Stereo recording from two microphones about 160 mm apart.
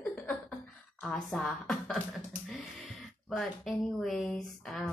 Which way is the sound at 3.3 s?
Centre (ahead or behind).